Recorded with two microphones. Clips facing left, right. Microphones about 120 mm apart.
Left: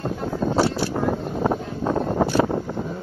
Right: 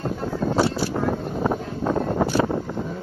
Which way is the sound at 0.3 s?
25° left (ahead or behind).